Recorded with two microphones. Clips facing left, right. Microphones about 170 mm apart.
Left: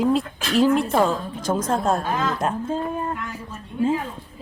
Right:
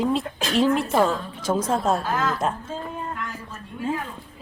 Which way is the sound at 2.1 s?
15° left (ahead or behind).